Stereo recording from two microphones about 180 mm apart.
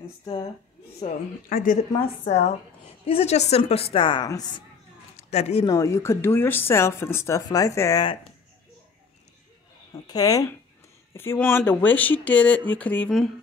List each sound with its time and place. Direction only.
0.2 s speech: 25° left (ahead or behind)
1.5 s a woman's voice: 45° left (ahead or behind)
3.1 s a woman's voice: 35° left (ahead or behind)
5.3 s a woman's voice: 35° left (ahead or behind)
5.7 s speech: 15° left (ahead or behind)
10.0 s speech: 20° left (ahead or behind); by 13.3 s 5° left (ahead or behind)